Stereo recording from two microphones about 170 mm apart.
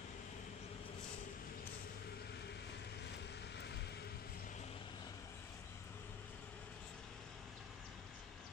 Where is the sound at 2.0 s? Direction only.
70° left (ahead or behind); by 4.6 s 50° left (ahead or behind).